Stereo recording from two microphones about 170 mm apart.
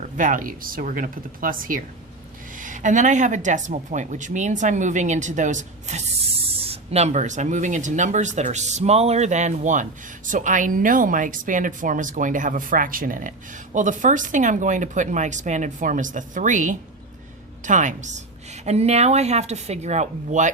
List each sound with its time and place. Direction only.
0.2 s a woman's voice: 50° right (ahead or behind)